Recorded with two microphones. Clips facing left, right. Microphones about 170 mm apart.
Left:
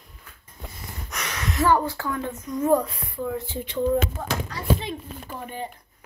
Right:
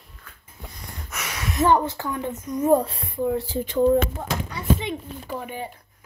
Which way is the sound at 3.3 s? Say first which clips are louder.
Right 5 dB; 35° right (ahead or behind).